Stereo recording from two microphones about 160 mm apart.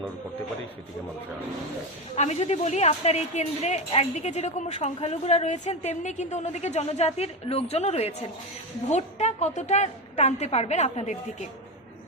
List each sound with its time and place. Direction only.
2.1 s a woman's voice: 45° left (ahead or behind)